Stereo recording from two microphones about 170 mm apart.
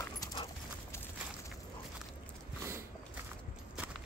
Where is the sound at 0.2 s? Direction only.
25° left (ahead or behind).